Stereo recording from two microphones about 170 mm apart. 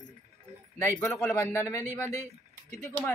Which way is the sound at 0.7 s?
15° left (ahead or behind).